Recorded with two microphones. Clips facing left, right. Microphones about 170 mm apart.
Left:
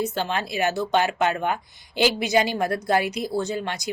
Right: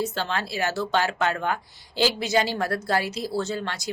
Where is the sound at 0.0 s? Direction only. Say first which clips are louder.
Left 2 dB; 15° left (ahead or behind).